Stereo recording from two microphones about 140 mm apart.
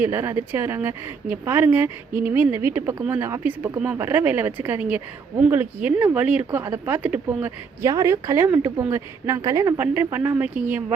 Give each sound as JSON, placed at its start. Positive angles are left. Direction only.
{"t": 0.0, "sound": "speech", "side_deg": -15}